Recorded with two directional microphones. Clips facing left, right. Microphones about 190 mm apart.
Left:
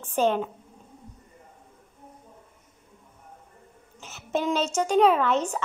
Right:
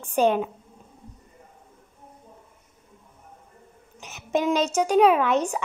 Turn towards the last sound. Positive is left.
turn(degrees=-10)  # may be behind; listen again after turning